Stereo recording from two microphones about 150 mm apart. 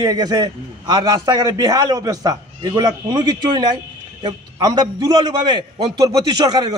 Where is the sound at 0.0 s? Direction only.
25° right (ahead or behind).